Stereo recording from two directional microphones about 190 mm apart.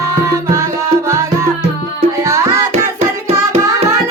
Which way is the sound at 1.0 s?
15° right (ahead or behind).